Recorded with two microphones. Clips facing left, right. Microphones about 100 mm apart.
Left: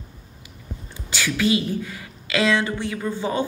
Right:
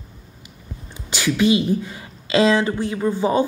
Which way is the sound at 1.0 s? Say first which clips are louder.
Right 4 dB; 20° right (ahead or behind).